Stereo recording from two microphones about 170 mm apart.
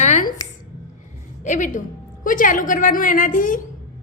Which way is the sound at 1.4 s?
50° left (ahead or behind).